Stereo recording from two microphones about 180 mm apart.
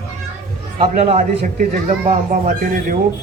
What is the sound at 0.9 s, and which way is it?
Speech, 40° right (ahead or behind).